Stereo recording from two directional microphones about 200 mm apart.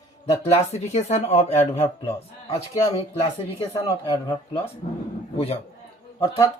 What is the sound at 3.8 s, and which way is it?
Speech, 15° left (ahead or behind).